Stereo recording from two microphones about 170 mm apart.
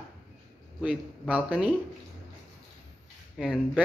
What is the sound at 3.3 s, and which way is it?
Speech, 5° right (ahead or behind).